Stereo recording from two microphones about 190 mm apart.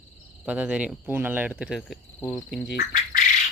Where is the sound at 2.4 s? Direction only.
60° left (ahead or behind).